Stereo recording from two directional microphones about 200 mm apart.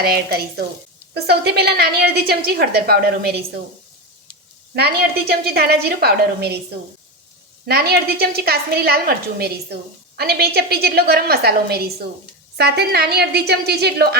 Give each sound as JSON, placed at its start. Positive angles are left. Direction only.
{"t": 0.0, "sound": "a woman's voice", "side_deg": -50}
{"t": 4.7, "sound": "a woman's voice", "side_deg": -50}
{"t": 7.6, "sound": "a woman's voice", "side_deg": -50}